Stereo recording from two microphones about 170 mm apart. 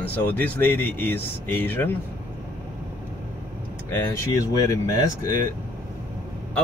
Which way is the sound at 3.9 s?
15° left (ahead or behind).